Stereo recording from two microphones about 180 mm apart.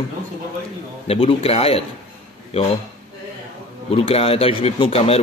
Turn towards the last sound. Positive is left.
turn(degrees=35)  # may be behind; listen again after turning